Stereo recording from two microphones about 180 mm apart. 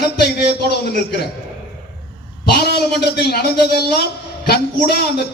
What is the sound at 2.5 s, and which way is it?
A man's voice, 65° left (ahead or behind).